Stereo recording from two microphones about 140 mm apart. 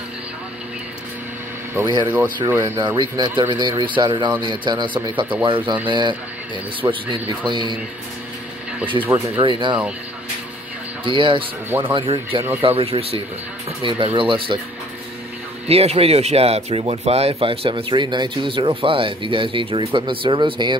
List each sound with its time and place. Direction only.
2.4 s speech: 20° right (ahead or behind)
3.0 s speech: 35° right (ahead or behind)
9.0 s speech: 10° right (ahead or behind)
9.4 s speech: 35° right (ahead or behind)
11.1 s speech: 35° right (ahead or behind)
15.7 s speech: 45° right (ahead or behind)